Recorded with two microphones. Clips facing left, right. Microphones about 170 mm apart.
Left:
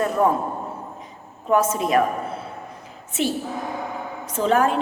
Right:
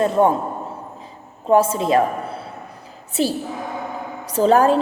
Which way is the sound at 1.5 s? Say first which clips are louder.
Right 4 dB; 30° right (ahead or behind).